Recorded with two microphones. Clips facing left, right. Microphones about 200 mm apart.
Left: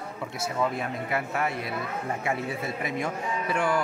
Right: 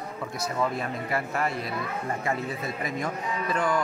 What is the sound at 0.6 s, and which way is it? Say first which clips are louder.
Speech: even; centre (ahead or behind).